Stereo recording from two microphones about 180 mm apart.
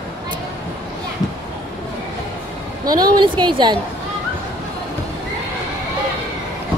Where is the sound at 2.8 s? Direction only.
20° right (ahead or behind).